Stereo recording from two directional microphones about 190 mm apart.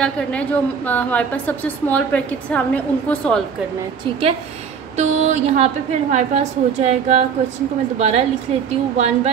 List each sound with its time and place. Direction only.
0.0 s a woman's voice: 5° left (ahead or behind)
4.9 s a woman's voice: 40° right (ahead or behind)